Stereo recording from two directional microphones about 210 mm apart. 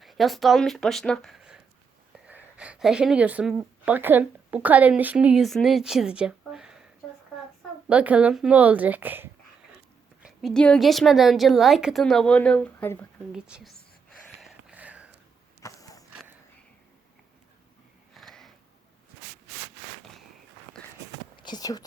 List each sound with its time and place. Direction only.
0.0 s speech: centre (ahead or behind)
7.9 s speech: 5° right (ahead or behind)
10.2 s a woman's voice: centre (ahead or behind)
13.3 s a sound: centre (ahead or behind)
15.6 s a sound: 15° left (ahead or behind)
18.1 s sniff: centre (ahead or behind)
21.3 s whispering: 20° left (ahead or behind)